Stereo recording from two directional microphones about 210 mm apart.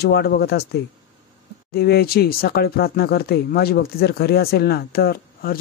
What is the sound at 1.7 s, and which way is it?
Speech, 45° left (ahead or behind).